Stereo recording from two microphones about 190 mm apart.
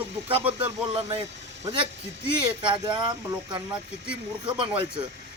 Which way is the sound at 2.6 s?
25° right (ahead or behind).